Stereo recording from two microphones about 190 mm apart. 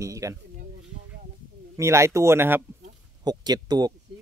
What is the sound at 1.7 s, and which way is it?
A man's voice, 15° right (ahead or behind).